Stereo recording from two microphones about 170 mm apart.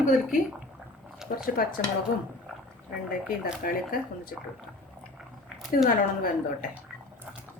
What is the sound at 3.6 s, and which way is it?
Speech, 55° left (ahead or behind).